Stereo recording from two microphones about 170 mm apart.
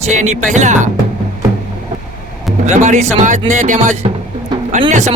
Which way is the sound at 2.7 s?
45° right (ahead or behind).